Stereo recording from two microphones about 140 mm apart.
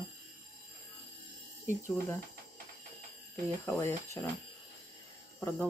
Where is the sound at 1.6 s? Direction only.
20° left (ahead or behind).